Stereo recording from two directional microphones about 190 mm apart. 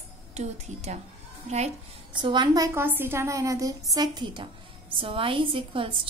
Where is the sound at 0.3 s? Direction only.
35° right (ahead or behind).